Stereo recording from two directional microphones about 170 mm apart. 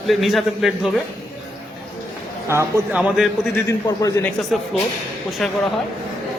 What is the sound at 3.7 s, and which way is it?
Speech, 20° left (ahead or behind).